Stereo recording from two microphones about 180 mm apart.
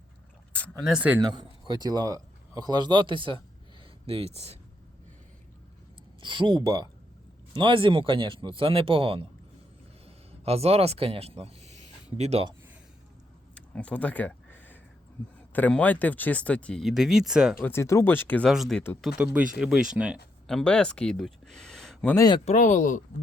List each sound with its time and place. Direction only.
0.9 s speech: 5° right (ahead or behind)
1.2 s speech: 25° right (ahead or behind)
6.2 s speech: 25° right (ahead or behind)
10.4 s speech: 35° right (ahead or behind)
13.5 s a sound: 5° left (ahead or behind)
15.5 s speech: 10° left (ahead or behind)
17.6 s speech: 15° left (ahead or behind)
18.5 s speech: centre (ahead or behind)
22.1 s speech: 20° left (ahead or behind)
22.4 s speech: 45° left (ahead or behind)